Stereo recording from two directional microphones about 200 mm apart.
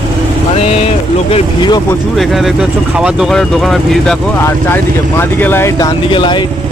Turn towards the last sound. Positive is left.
turn(degrees=25)  # may be behind; listen again after turning